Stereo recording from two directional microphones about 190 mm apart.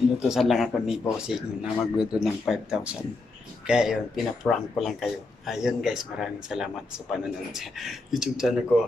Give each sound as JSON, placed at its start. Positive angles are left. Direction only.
{"t": 0.2, "sound": "speech", "side_deg": 0}